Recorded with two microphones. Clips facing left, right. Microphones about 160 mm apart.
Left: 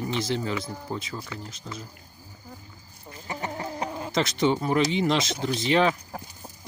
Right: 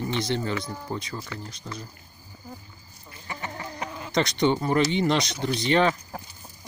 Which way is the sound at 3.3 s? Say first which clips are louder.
Left 3 dB; 30° left (ahead or behind).